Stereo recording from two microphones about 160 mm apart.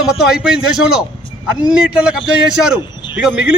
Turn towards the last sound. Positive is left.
turn(degrees=-5)  # may be behind; listen again after turning